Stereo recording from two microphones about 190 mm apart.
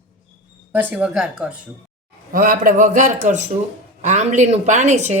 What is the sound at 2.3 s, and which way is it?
A man's voice, 45° right (ahead or behind).